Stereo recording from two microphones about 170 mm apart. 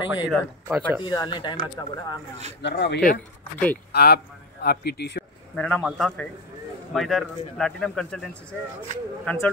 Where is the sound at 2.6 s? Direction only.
80° left.